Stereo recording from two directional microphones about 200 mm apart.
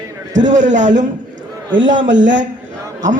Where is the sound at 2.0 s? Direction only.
65° right (ahead or behind).